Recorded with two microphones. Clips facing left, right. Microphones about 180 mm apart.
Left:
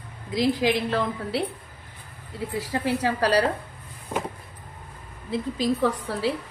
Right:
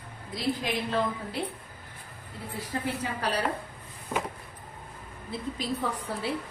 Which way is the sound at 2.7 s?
80° left.